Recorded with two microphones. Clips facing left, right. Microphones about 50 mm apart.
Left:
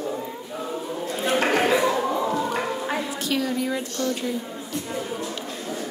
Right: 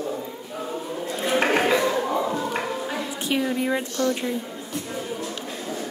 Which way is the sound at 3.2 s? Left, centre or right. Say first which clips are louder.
Right 3 dB; right.